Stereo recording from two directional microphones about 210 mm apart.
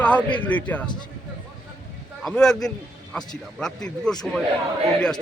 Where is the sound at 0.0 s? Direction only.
5° left (ahead or behind).